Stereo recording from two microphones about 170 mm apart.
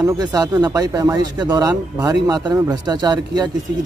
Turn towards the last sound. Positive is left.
turn(degrees=-25)  # may be behind; listen again after turning